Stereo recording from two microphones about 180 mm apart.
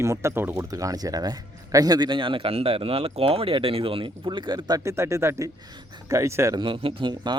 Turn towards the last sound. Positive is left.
turn(degrees=-25)  # may be behind; listen again after turning